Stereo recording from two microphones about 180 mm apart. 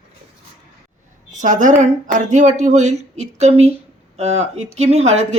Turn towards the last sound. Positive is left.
turn(degrees=-35)  # may be behind; listen again after turning